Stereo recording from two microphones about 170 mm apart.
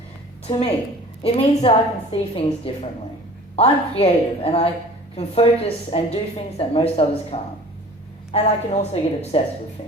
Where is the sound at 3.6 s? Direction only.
35° left (ahead or behind).